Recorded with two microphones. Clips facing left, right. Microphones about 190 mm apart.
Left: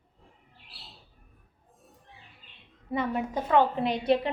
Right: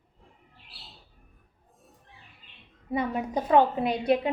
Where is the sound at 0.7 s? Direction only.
Centre (ahead or behind).